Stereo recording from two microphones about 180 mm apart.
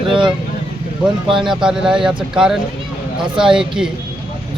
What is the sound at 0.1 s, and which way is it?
Vehicle, 25° right (ahead or behind).